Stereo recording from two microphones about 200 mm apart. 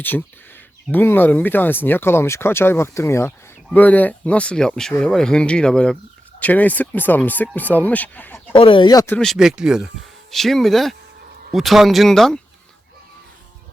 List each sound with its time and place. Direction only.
0.0 s speech: 10° left (ahead or behind)
8.5 s speech: 25° left (ahead or behind)
9.1 s speech: centre (ahead or behind)